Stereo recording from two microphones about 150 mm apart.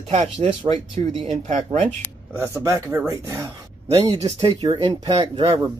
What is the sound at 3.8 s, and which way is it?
Speech, 45° right (ahead or behind).